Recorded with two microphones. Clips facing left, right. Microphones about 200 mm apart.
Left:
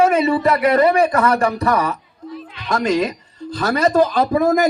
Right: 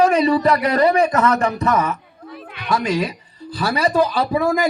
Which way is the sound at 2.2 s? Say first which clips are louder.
Left 3 dB; 60° right (ahead or behind).